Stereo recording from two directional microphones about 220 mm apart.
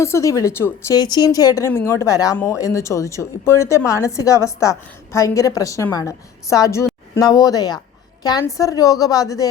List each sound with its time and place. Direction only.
0.0 s a woman's voice: 15° left (ahead or behind)